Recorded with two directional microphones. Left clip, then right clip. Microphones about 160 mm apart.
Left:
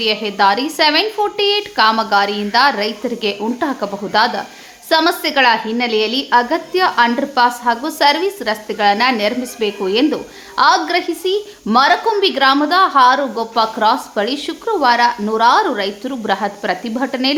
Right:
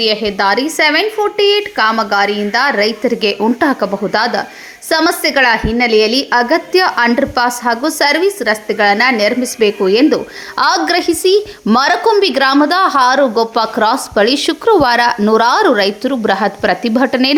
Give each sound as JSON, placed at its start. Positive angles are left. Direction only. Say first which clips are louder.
{"t": 0.0, "sound": "a woman's voice", "louder": "right 1 dB", "side_deg": -25}
{"t": 10.6, "sound": "speech", "louder": "right 1 dB", "side_deg": -45}